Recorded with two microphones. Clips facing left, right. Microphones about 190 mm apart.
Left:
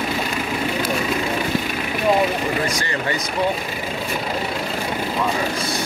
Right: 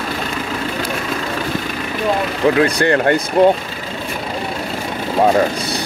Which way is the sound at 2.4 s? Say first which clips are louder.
Right 9 dB; 70° right (ahead or behind).